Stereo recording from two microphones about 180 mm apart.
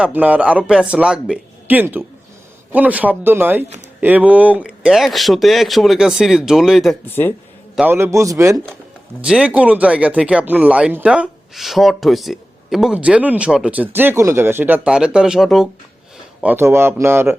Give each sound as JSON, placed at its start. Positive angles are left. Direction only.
{"t": 0.0, "sound": "speech", "side_deg": -10}
{"t": 7.0, "sound": "speech", "side_deg": 10}
{"t": 7.8, "sound": "speech", "side_deg": -10}
{"t": 9.2, "sound": "speech", "side_deg": -5}
{"t": 16.4, "sound": "speech", "side_deg": -10}